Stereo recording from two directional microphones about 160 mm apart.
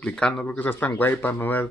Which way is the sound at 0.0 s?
5° left (ahead or behind).